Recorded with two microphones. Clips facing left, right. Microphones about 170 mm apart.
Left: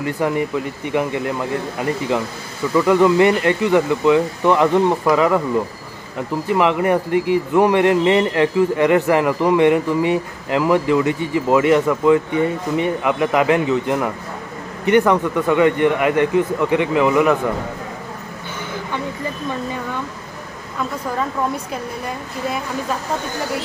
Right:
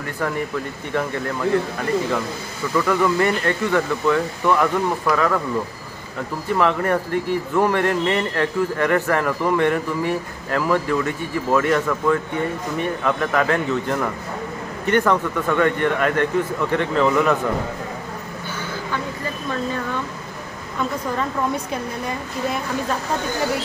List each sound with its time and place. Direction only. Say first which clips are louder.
0.2 s speech: left 3 dB; 15° left (ahead or behind)
2.7 s speech: left 5 dB; 15° left (ahead or behind)
6.5 s speech: left 3 dB; 15° left (ahead or behind)